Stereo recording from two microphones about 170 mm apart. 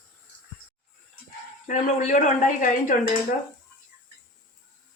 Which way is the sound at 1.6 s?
45° left (ahead or behind).